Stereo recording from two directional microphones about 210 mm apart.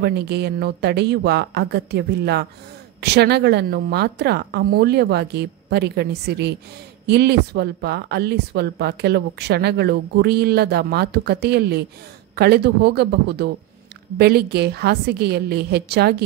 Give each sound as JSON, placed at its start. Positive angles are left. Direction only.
{"t": 0.0, "sound": "speech", "side_deg": -50}